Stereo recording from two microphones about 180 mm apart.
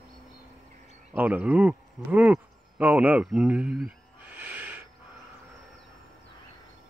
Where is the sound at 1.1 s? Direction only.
10° right (ahead or behind).